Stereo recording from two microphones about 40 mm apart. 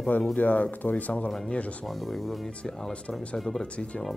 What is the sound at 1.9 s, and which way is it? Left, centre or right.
Speech, centre.